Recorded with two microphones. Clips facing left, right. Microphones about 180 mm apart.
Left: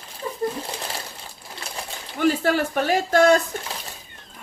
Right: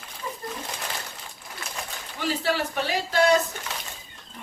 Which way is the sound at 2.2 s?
50° left (ahead or behind).